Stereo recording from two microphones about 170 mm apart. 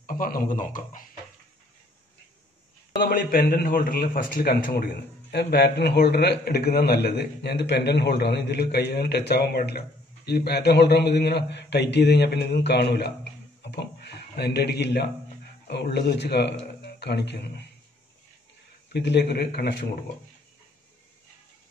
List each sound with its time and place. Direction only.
0.0 s a man's voice: 55° left (ahead or behind)
3.0 s a man's voice: 60° left (ahead or behind)
5.3 s a man's voice: 70° left (ahead or behind)
18.9 s a man's voice: 85° left